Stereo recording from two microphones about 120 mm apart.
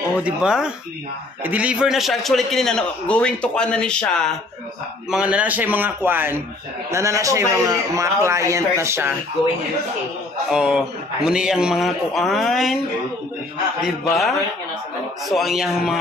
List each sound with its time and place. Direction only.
0.2 s a man's voice: 5° right (ahead or behind)
5.1 s a man's voice: 10° right (ahead or behind)
10.5 s a man's voice: 5° right (ahead or behind)
15.2 s a man's voice: centre (ahead or behind)